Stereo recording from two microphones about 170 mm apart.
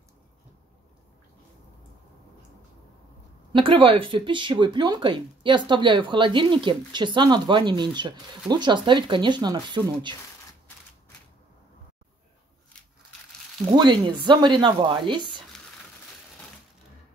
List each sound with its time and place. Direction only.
3.5 s speech: 30° right (ahead or behind)
13.7 s speech: 25° right (ahead or behind)